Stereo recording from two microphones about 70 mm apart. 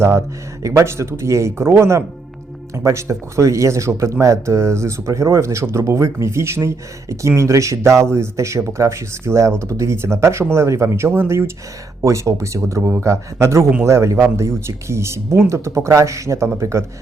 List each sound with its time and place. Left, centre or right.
0.6 s speech: right